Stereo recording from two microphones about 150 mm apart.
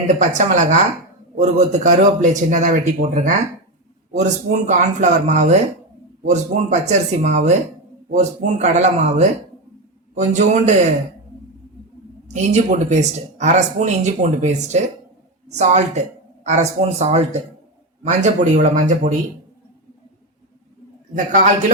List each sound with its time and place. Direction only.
0.1 s a man's voice: 55° right (ahead or behind)
12.3 s speech: 50° right (ahead or behind)
21.2 s a man's voice: 60° right (ahead or behind)